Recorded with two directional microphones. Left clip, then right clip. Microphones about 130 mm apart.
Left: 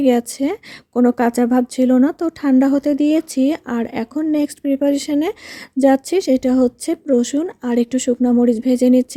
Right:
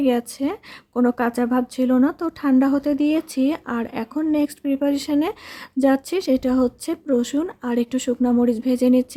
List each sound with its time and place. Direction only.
0.0 s a woman's voice: 35° left (ahead or behind)